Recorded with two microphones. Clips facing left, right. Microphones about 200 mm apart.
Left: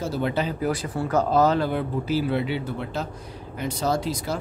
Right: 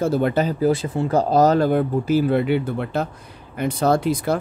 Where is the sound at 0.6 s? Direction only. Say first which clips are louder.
Right 6 dB; 25° right (ahead or behind); by 4.4 s 55° right (ahead or behind).